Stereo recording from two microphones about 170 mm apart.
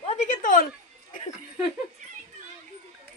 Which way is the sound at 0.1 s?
50° left (ahead or behind).